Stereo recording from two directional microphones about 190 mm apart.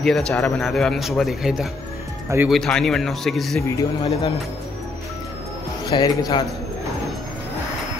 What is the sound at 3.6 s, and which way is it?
Speech, 15° left (ahead or behind).